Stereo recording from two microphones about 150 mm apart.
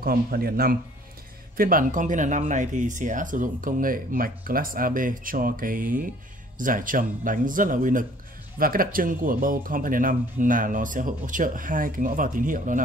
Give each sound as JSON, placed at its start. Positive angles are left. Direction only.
{"t": 0.0, "sound": "speech", "side_deg": -80}
{"t": 1.6, "sound": "speech", "side_deg": -65}